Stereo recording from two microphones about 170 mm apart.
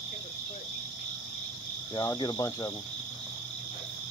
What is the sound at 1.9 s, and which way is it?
Cricket, 25° left (ahead or behind).